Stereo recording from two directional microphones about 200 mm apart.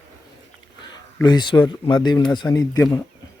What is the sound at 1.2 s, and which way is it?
Speech, 20° left (ahead or behind).